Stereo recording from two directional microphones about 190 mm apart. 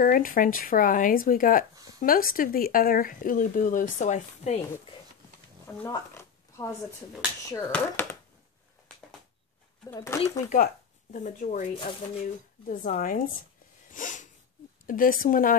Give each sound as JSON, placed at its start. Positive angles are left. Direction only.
{"t": 0.0, "sound": "speech", "side_deg": 50}
{"t": 5.7, "sound": "a sound", "side_deg": 15}
{"t": 7.4, "sound": "speech", "side_deg": 15}
{"t": 9.9, "sound": "speech", "side_deg": 15}
{"t": 10.5, "sound": "speech", "side_deg": 45}
{"t": 13.8, "sound": "a sound", "side_deg": 45}
{"t": 14.9, "sound": "speech", "side_deg": 45}